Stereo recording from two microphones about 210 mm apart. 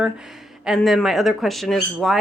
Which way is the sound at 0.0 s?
5° right (ahead or behind).